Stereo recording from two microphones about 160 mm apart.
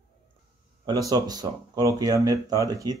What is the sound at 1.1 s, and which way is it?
Speech, 25° right (ahead or behind).